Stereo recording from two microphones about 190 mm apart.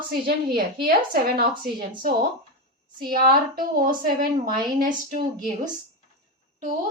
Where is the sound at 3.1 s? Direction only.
50° right (ahead or behind).